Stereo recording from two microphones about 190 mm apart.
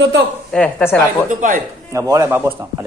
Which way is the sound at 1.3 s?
45° right (ahead or behind).